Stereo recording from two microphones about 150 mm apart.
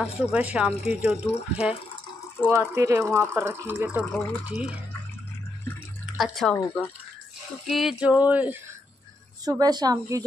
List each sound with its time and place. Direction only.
0.2 s speech: 10° right (ahead or behind)
2.5 s speech: 20° right (ahead or behind)
6.1 s speech: centre (ahead or behind)
6.5 s speech: 15° left (ahead or behind)
7.6 s speech: centre (ahead or behind)
9.4 s speech: 25° right (ahead or behind)